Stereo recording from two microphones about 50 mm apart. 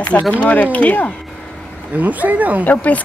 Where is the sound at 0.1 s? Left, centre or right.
Left.